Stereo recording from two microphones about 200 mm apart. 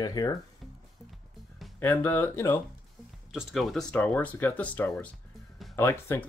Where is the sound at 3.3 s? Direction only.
Centre (ahead or behind).